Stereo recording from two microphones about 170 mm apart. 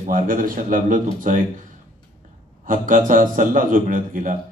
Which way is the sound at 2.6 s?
50° right (ahead or behind).